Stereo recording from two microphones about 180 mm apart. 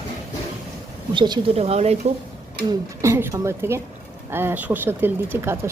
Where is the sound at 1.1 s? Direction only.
25° right (ahead or behind).